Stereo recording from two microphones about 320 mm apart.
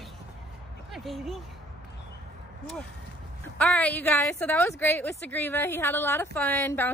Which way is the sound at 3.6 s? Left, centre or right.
Centre.